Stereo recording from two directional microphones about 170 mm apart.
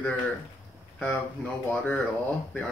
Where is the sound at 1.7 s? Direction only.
10° left (ahead or behind).